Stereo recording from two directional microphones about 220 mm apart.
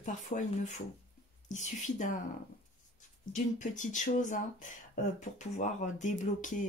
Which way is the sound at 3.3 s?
35° left (ahead or behind).